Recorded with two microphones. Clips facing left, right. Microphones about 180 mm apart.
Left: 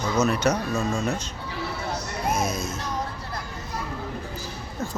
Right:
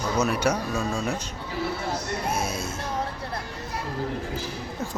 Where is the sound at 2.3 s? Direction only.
10° right (ahead or behind).